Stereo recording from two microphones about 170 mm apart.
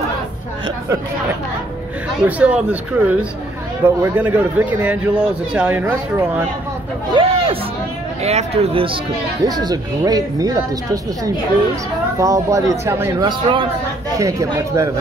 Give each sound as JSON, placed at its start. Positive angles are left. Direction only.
{"t": 2.2, "sound": "a man's voice", "side_deg": -10}
{"t": 7.2, "sound": "a sound", "side_deg": -30}
{"t": 8.2, "sound": "speech", "side_deg": -40}
{"t": 9.5, "sound": "speech", "side_deg": -20}
{"t": 12.2, "sound": "speech", "side_deg": -20}